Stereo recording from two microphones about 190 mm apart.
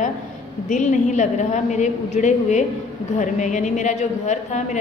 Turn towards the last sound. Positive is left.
turn(degrees=40)  # may be behind; listen again after turning